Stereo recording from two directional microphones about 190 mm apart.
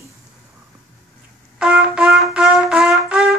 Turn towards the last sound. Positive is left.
turn(degrees=0)  # may be behind; listen again after turning